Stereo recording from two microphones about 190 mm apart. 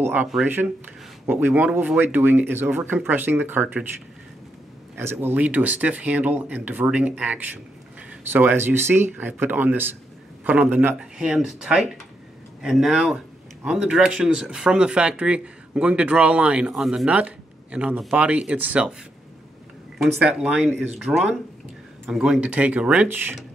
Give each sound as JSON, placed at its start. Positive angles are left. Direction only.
{"t": 0.0, "sound": "speech", "side_deg": -10}
{"t": 4.9, "sound": "speech", "side_deg": -10}
{"t": 20.0, "sound": "speech", "side_deg": -5}